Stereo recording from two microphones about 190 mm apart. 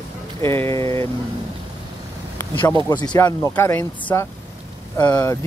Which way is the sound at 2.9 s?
20° left (ahead or behind).